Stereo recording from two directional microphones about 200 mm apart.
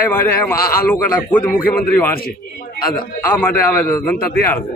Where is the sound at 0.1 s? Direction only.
10° left (ahead or behind).